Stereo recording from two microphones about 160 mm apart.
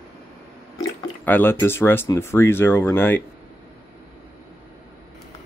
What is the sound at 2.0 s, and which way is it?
Speech, 15° left (ahead or behind).